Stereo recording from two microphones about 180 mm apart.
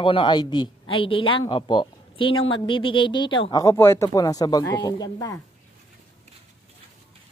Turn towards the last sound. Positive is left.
turn(degrees=20)  # may be behind; listen again after turning